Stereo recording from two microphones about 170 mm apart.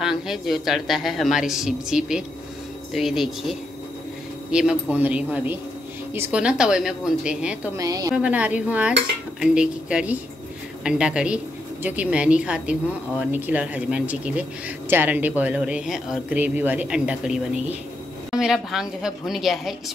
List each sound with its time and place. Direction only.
0.0 s a woman's voice: centre (ahead or behind)
7.7 s a woman's voice: 20° right (ahead or behind)
8.1 s a woman's voice: 10° right (ahead or behind)